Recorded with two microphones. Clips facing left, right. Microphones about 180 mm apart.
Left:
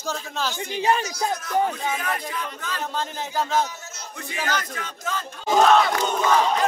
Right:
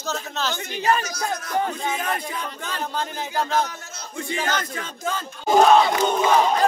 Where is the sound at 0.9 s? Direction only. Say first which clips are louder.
Even; 25° left (ahead or behind).